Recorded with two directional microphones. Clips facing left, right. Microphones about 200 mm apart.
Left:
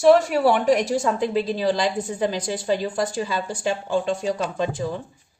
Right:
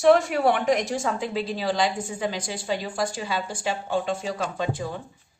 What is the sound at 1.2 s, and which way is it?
Speech, 40° left (ahead or behind).